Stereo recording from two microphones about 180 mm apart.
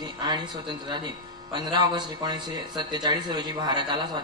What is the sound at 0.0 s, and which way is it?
A man's voice, 25° right (ahead or behind).